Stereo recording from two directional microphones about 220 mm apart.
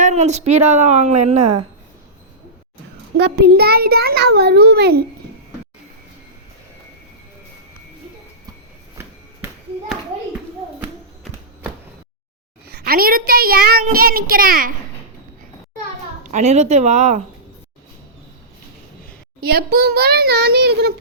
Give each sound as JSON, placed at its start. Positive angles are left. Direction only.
{"t": 0.0, "sound": "a child's voice", "side_deg": -30}
{"t": 3.2, "sound": "a child's voice", "side_deg": -50}
{"t": 9.0, "sound": "a sound", "side_deg": -10}
{"t": 12.6, "sound": "a child's voice", "side_deg": -45}
{"t": 16.2, "sound": "a child's voice", "side_deg": -30}
{"t": 19.4, "sound": "a child's voice", "side_deg": -45}